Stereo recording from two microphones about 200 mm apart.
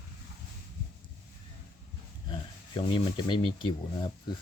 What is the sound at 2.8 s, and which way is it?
Speech, 25° left (ahead or behind).